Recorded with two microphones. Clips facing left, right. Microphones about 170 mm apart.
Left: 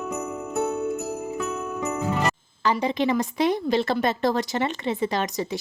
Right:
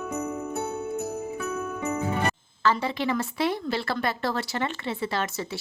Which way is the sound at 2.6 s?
15° left (ahead or behind).